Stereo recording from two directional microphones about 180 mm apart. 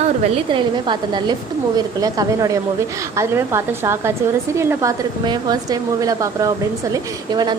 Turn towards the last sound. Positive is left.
turn(degrees=-20)  # may be behind; listen again after turning